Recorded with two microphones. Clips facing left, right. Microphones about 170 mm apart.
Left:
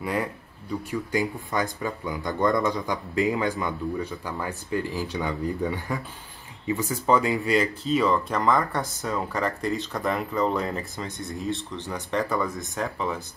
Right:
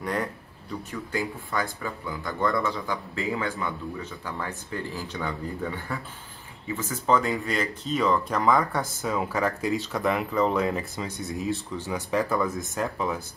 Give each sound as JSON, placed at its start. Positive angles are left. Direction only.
{"t": 0.0, "sound": "speech", "side_deg": 5}